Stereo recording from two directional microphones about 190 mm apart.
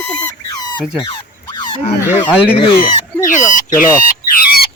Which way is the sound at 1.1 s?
25° left (ahead or behind).